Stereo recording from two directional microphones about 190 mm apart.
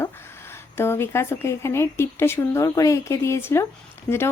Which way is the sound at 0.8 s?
15° left (ahead or behind).